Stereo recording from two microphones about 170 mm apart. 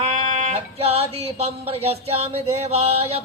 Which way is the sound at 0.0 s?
40° right (ahead or behind).